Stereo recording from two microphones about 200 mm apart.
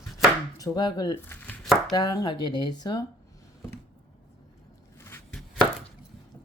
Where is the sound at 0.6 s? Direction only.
20° left (ahead or behind).